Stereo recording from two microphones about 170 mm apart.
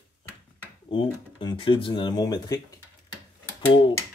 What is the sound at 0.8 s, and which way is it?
Speech, 25° left (ahead or behind).